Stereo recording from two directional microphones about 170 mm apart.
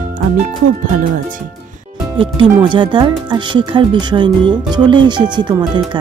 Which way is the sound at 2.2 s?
30° right (ahead or behind).